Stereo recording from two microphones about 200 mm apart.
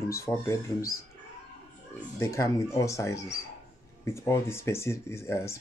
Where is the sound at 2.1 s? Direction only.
15° left (ahead or behind).